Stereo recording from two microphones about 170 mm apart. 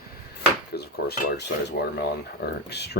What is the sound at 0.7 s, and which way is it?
Speech, 70° left (ahead or behind).